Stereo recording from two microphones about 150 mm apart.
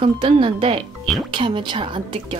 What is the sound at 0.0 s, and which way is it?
A woman's voice, 35° right (ahead or behind).